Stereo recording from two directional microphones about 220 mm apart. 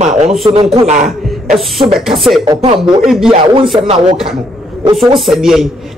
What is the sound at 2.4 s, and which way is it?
Speech, 20° right (ahead or behind).